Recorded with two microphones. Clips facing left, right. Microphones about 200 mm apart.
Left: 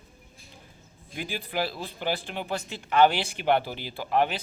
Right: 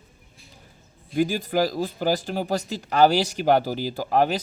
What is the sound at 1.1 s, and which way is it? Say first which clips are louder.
Speech: right 9 dB; 45° right (ahead or behind).